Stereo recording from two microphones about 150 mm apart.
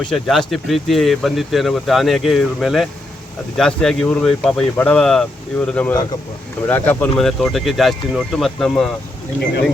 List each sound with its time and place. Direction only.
0.0 s speech: centre (ahead or behind)